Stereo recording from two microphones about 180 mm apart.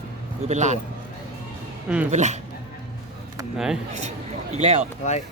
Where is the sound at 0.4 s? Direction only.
40° right (ahead or behind).